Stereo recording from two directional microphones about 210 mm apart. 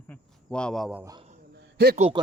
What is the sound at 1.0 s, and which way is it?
Speech, 15° right (ahead or behind).